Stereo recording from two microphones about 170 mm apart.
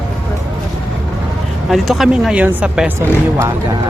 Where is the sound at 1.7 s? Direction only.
Centre (ahead or behind).